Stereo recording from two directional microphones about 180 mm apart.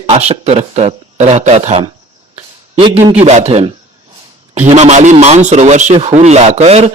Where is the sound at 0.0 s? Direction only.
35° right (ahead or behind).